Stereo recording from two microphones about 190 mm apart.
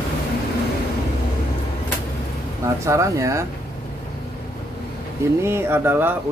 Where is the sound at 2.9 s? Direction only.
15° right (ahead or behind).